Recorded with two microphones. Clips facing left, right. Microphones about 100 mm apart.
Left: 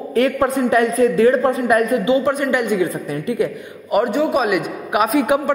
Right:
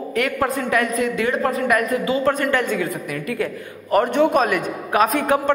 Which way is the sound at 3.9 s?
10° left (ahead or behind).